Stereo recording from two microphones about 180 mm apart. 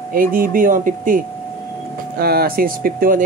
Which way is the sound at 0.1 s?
50° right (ahead or behind).